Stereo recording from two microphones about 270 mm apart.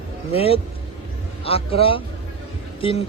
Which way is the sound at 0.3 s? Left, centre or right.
Left.